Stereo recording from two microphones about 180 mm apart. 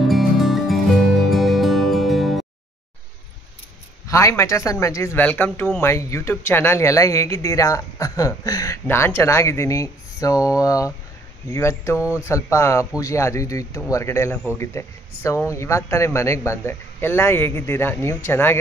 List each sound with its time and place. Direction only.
0.0 s music: centre (ahead or behind)
4.1 s speech: 15° left (ahead or behind)